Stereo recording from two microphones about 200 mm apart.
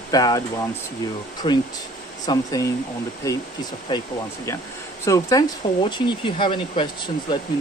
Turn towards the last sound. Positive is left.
turn(degrees=25)  # may be behind; listen again after turning